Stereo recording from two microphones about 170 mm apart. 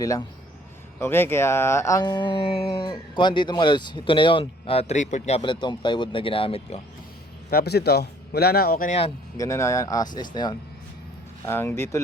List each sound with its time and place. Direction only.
0.0 s speech: 20° left (ahead or behind); by 5.4 s 45° left (ahead or behind)
5.4 s speech: 30° left (ahead or behind)
7.5 s a man's voice: 70° left (ahead or behind)
8.9 s speech: 35° left (ahead or behind)
9.4 s speech: 15° left (ahead or behind)
11.4 s speech: 15° left (ahead or behind)